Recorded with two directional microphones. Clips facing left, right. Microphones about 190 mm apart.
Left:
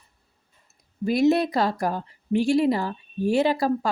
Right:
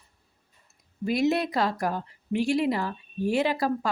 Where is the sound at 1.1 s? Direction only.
35° left (ahead or behind).